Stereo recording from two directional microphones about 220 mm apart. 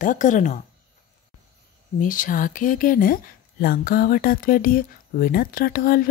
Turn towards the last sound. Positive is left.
turn(degrees=40)  # may be behind; listen again after turning